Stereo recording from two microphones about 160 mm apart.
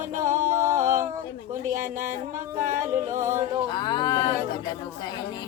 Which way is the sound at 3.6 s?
30° left (ahead or behind).